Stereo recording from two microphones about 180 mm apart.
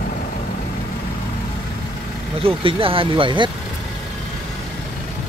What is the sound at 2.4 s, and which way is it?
Speech, 30° right (ahead or behind).